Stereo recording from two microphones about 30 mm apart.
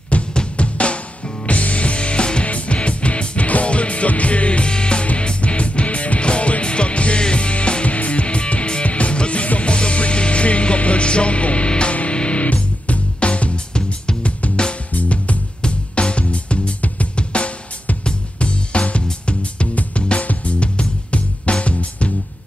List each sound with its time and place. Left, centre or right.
0.1 s drum: left
1.4 s music: left
2.4 s music: left
15.9 s music: left
17.1 s drum: left
18.0 s music: left